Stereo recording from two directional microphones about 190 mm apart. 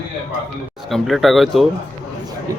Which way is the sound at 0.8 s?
Centre (ahead or behind).